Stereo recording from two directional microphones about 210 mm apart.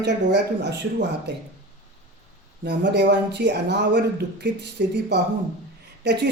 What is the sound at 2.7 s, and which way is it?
Speech, 55° right (ahead or behind).